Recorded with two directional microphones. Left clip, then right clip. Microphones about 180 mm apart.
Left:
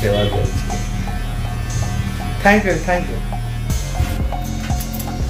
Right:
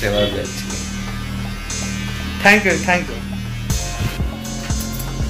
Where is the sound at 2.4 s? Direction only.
20° right (ahead or behind).